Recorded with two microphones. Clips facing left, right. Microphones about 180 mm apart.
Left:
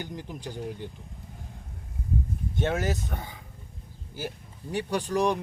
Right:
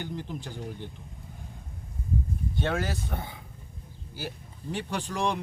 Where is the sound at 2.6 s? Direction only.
20° left (ahead or behind).